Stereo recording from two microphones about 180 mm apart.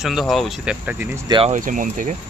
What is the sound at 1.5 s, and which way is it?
Speech, 45° right (ahead or behind).